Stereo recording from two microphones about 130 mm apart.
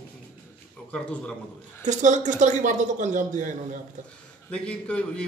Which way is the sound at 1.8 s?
70° right (ahead or behind).